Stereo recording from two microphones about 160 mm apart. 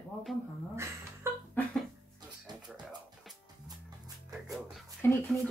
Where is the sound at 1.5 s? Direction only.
10° left (ahead or behind).